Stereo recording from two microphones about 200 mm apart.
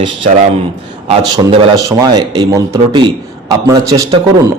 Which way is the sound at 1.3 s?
20° right (ahead or behind).